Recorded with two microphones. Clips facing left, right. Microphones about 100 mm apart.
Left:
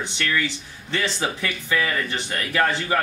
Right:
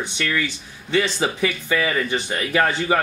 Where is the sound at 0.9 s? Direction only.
15° right (ahead or behind).